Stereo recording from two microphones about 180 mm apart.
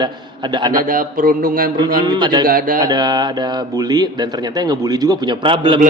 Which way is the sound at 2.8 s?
20° right (ahead or behind).